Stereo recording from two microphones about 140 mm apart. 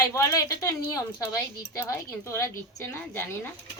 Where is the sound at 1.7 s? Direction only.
20° left (ahead or behind).